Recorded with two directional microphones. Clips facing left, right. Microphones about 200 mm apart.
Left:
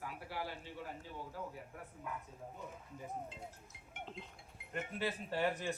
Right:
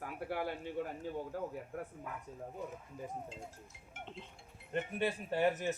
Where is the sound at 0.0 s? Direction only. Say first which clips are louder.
Right 6 dB; 55° right (ahead or behind).